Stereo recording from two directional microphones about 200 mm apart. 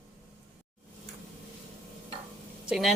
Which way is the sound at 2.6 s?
Centre (ahead or behind).